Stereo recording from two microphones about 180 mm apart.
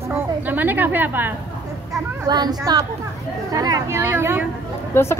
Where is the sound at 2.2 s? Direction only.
20° right (ahead or behind).